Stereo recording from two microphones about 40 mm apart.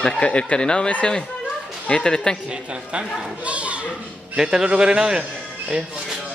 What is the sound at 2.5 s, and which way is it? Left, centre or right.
A man's voice, right.